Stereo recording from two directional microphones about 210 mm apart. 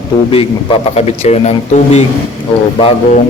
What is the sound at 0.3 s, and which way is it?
A man's voice, 25° left (ahead or behind).